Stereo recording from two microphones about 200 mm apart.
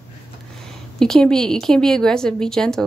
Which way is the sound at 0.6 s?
5° left (ahead or behind).